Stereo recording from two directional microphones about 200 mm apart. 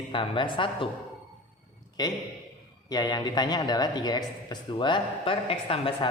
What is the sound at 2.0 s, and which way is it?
Speech, 20° left (ahead or behind).